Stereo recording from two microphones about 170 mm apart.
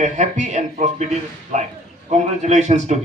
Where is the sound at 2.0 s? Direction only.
45° right (ahead or behind).